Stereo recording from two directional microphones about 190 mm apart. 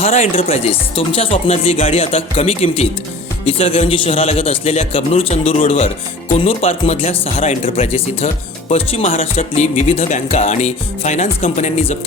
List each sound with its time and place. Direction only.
0.0 s speech: 35° left (ahead or behind)